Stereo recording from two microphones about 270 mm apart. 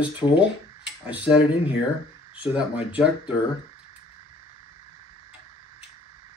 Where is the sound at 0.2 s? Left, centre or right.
Centre.